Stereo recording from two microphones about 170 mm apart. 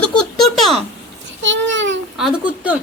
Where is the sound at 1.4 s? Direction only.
90° right.